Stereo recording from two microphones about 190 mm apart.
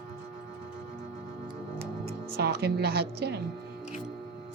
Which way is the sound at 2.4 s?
60° right (ahead or behind).